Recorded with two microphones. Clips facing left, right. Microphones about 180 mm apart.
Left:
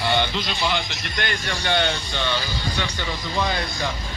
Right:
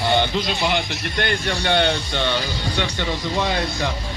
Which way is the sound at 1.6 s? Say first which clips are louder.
Right 3 dB; 55° right (ahead or behind).